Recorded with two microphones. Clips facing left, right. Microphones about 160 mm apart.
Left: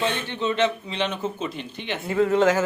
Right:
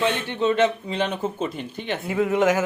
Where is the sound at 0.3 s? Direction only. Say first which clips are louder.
Right 4 dB; 50° right (ahead or behind).